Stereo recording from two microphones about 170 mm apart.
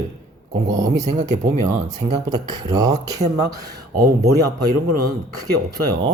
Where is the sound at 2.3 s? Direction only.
25° right (ahead or behind).